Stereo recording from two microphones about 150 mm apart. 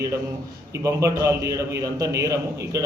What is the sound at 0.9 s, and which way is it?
A man's voice, 20° right (ahead or behind).